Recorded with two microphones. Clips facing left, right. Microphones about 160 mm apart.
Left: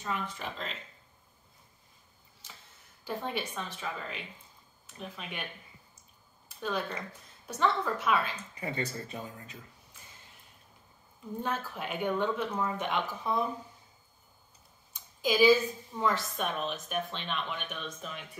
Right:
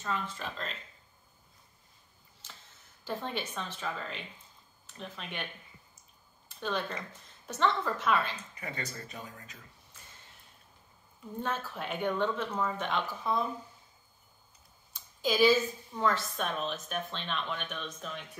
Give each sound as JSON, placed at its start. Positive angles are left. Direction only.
{"t": 0.0, "sound": "a woman's voice", "side_deg": 15}
{"t": 3.1, "sound": "a woman's voice", "side_deg": 10}
{"t": 6.6, "sound": "a woman's voice", "side_deg": 5}
{"t": 8.5, "sound": "speech", "side_deg": 30}
{"t": 11.4, "sound": "a woman's voice", "side_deg": 10}
{"t": 15.2, "sound": "a woman's voice", "side_deg": 10}